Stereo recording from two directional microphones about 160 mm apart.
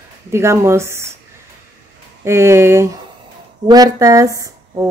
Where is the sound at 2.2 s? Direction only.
15° right (ahead or behind).